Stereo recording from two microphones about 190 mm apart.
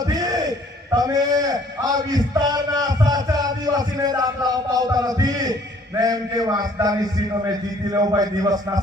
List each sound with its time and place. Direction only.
0.1 s a man's voice: 20° right (ahead or behind)